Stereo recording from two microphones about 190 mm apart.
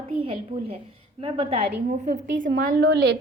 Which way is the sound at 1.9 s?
40° right (ahead or behind).